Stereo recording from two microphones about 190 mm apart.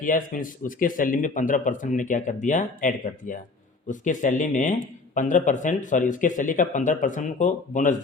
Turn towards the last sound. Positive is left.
turn(degrees=40)  # may be behind; listen again after turning